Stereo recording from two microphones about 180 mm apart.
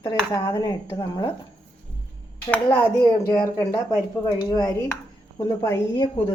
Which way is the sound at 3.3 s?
15° left (ahead or behind).